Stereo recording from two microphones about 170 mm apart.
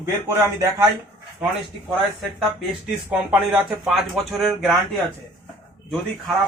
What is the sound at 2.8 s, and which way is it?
Speech, 5° right (ahead or behind).